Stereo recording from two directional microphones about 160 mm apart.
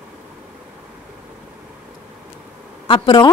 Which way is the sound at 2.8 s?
30° left (ahead or behind).